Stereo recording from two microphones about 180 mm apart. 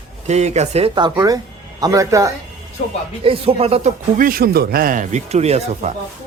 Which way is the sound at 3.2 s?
30° right (ahead or behind).